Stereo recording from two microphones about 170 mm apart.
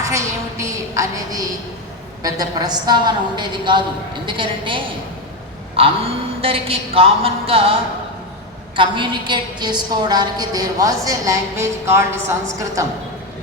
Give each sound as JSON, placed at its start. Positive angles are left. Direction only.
{"t": 0.0, "sound": "a woman's voice", "side_deg": -15}